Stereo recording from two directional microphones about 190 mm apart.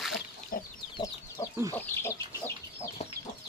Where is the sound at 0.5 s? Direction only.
50° left (ahead or behind).